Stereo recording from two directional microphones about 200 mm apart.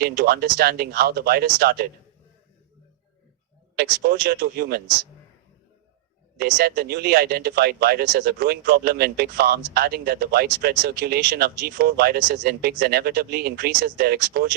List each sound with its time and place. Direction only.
0.0 s speech: 50° right (ahead or behind)
3.8 s speech: 50° right (ahead or behind)
6.4 s speech: 50° right (ahead or behind)